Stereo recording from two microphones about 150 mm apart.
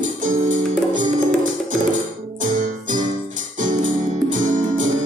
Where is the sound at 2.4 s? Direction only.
55° right (ahead or behind).